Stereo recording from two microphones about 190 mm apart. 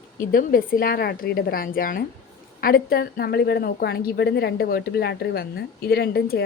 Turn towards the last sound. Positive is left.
turn(degrees=55)  # may be behind; listen again after turning